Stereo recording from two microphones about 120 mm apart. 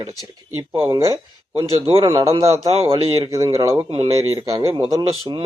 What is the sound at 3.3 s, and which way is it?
Speech, 30° right (ahead or behind).